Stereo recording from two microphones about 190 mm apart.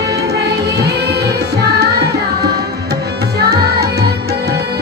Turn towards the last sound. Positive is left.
turn(degrees=-55)  # may be behind; listen again after turning